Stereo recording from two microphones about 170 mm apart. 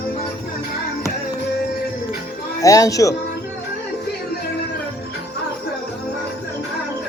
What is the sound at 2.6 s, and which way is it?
Speech, 20° left (ahead or behind).